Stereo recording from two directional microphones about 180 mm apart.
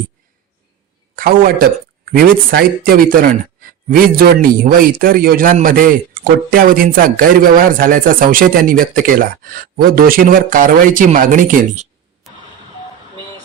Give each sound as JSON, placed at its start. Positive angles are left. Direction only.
{"t": 1.1, "sound": "a man's voice", "side_deg": -55}